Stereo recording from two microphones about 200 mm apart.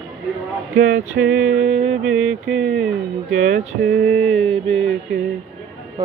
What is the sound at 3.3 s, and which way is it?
Mantra, 35° right (ahead or behind).